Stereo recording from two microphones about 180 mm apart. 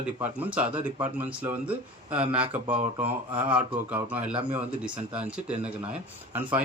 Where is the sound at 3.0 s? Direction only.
10° right (ahead or behind).